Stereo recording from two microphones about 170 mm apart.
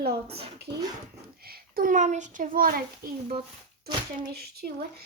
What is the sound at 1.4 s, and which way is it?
A child's voice, 65° right (ahead or behind).